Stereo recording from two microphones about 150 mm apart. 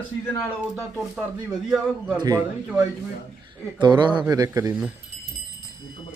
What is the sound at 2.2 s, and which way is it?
Speech, 25° right (ahead or behind).